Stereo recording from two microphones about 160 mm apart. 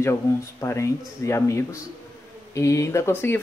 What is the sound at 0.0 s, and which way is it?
Speech, 15° left (ahead or behind).